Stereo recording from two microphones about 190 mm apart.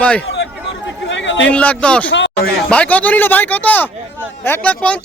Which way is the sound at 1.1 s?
75° left (ahead or behind).